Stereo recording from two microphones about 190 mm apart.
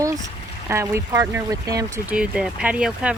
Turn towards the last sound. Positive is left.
turn(degrees=-5)  # may be behind; listen again after turning